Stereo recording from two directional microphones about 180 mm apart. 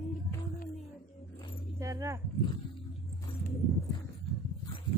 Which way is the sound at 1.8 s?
15° right (ahead or behind).